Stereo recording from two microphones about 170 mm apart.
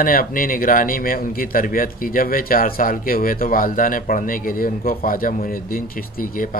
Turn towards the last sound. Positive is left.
turn(degrees=55)  # may be behind; listen again after turning